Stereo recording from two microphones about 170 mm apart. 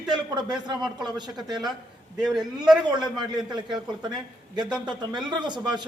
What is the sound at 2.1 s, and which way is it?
Speech, 5° right (ahead or behind).